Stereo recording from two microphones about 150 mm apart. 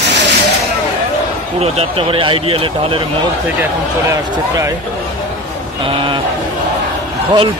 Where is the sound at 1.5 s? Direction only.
45° right (ahead or behind).